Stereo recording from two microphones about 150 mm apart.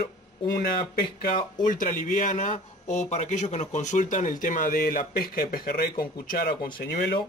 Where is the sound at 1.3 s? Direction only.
65° left (ahead or behind).